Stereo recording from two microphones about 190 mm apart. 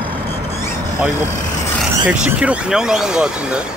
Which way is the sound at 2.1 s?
5° right (ahead or behind).